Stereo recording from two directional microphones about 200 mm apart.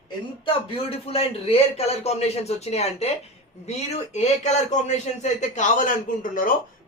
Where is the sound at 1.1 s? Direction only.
30° left (ahead or behind).